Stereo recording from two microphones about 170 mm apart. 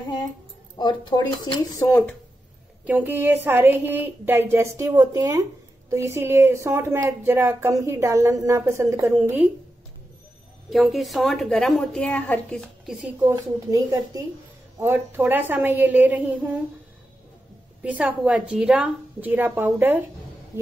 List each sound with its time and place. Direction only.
0.7 s speech: 25° left (ahead or behind)
1.9 s speech: 10° left (ahead or behind)
2.9 s a woman's voice: 10° right (ahead or behind)
10.7 s a woman's voice: centre (ahead or behind)
13.2 s a woman's voice: 20° right (ahead or behind)
17.8 s a woman's voice: 10° right (ahead or behind)